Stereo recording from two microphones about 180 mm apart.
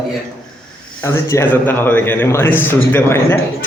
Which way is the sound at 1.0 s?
15° left (ahead or behind).